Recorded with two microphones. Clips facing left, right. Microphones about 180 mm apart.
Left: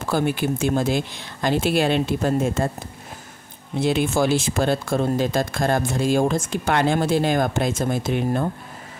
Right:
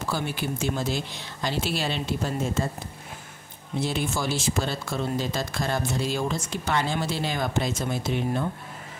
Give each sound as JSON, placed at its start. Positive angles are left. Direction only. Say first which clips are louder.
{"t": 0.1, "sound": "speech", "louder": "left 9 dB", "side_deg": 50}
{"t": 3.8, "sound": "speech", "louder": "left 8 dB", "side_deg": 60}